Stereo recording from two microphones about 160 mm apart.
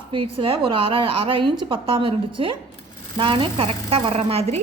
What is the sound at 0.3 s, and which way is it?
A woman's voice, 35° right (ahead or behind).